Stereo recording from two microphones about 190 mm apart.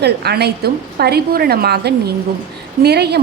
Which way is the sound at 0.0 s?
60° right (ahead or behind).